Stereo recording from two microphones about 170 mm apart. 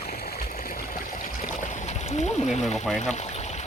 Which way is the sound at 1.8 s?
40° left (ahead or behind).